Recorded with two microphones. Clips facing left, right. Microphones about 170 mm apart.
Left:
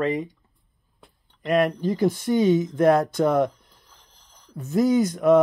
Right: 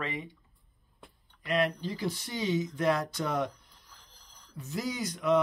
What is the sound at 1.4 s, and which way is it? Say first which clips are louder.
Speech: left 8 dB; 50° left (ahead or behind).